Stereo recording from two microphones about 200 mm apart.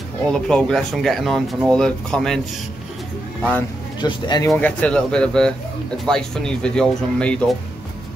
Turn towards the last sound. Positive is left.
turn(degrees=5)  # may be behind; listen again after turning